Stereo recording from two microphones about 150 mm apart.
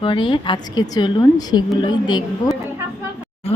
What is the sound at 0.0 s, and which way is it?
A woman's voice, 35° left (ahead or behind).